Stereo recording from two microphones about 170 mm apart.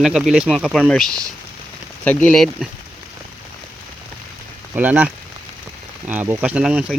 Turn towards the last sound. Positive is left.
turn(degrees=-5)  # may be behind; listen again after turning